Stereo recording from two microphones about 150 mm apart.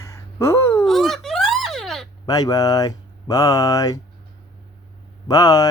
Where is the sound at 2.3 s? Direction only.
25° left (ahead or behind).